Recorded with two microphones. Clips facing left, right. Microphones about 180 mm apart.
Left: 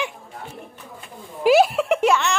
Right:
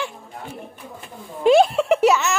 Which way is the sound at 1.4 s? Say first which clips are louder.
Right 1 dB; 5° left (ahead or behind).